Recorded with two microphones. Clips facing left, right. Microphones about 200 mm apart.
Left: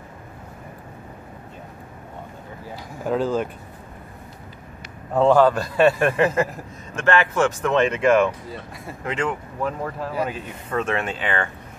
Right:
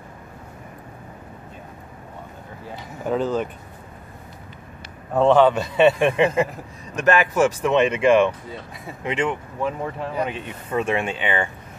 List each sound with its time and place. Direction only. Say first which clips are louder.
2.7 s speech: even; centre (ahead or behind)
5.2 s speech: even; 5° left (ahead or behind)
7.1 s speech: right 1 dB; 10° right (ahead or behind)
10.8 s speech: right 2 dB; 10° right (ahead or behind)